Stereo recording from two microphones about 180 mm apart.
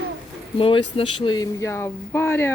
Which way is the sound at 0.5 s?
30° left (ahead or behind).